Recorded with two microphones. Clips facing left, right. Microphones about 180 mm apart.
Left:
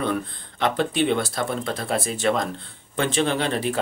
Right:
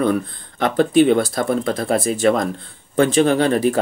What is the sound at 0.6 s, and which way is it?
Speech, 45° right (ahead or behind).